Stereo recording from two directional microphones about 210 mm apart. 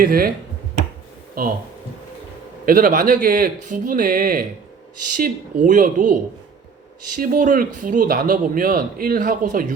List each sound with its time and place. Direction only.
0.0 s speech: 45° right (ahead or behind)
1.4 s speech: 45° right (ahead or behind)
2.6 s a man's voice: 40° right (ahead or behind)
7.2 s a man's voice: 40° right (ahead or behind)